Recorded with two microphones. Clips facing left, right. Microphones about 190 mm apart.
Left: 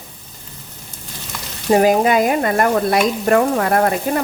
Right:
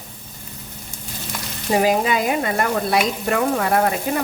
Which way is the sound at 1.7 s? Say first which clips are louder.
Left 5 dB; 50° left (ahead or behind).